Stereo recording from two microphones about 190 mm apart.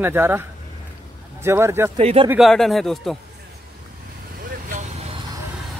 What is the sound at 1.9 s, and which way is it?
Speech, 30° right (ahead or behind).